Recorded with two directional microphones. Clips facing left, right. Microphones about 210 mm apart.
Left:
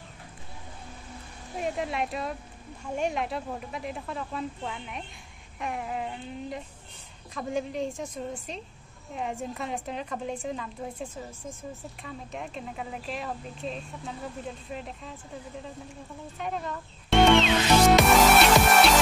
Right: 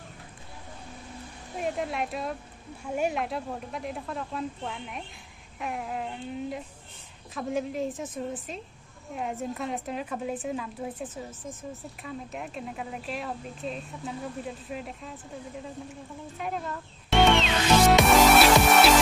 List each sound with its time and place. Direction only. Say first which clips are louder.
1.6 s a woman's voice: even; centre (ahead or behind)
16.3 s music: even; centre (ahead or behind)